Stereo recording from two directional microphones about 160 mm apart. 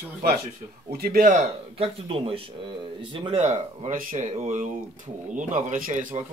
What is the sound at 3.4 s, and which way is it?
Speech, 50° right (ahead or behind).